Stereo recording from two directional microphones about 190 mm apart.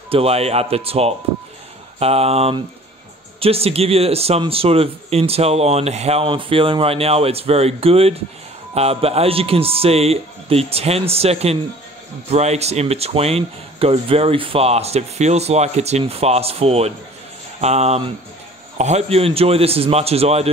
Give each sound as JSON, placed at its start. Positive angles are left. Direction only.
{"t": 0.1, "sound": "speech", "side_deg": -30}